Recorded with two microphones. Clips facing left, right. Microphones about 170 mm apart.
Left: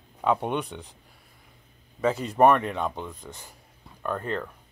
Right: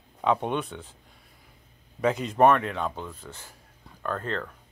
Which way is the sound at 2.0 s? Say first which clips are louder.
Left 1 dB; 10° left (ahead or behind).